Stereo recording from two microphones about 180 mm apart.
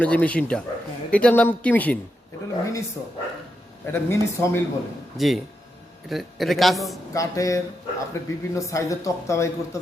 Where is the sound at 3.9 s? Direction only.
15° left (ahead or behind).